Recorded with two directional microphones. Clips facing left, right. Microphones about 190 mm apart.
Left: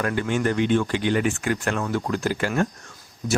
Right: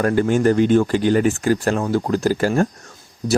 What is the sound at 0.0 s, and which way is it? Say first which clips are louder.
Speech: right 7 dB; 40° right (ahead or behind).